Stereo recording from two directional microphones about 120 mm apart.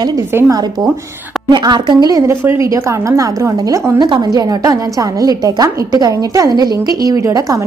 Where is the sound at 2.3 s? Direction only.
25° right (ahead or behind).